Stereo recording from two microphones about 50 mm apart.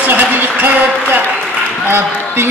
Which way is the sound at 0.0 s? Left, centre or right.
Right.